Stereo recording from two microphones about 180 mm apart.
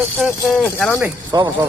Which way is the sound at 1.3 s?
20° right (ahead or behind).